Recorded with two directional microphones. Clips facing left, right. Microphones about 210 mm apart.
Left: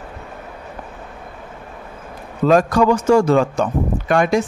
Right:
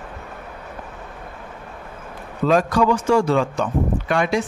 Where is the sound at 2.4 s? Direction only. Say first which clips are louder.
Left 3 dB; 45° left (ahead or behind).